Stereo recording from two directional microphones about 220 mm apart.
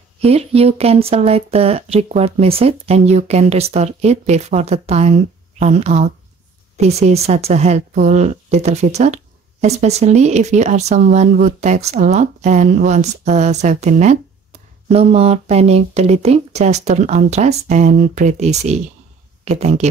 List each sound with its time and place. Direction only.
0.2 s a woman's voice: 25° right (ahead or behind)